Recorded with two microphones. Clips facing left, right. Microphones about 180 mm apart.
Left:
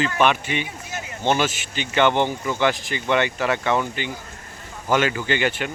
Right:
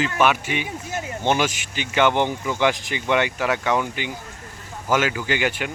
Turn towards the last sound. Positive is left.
turn(degrees=-10)  # may be behind; listen again after turning